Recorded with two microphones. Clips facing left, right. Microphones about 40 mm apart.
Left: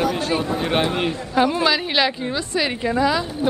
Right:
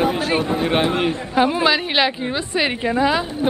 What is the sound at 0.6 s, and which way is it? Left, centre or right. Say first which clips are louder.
A man's voice: right 2 dB; centre.